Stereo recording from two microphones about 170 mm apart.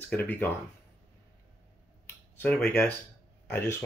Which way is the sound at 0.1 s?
10° left (ahead or behind).